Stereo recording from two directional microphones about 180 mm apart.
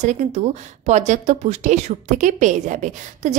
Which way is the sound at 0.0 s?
40° right (ahead or behind).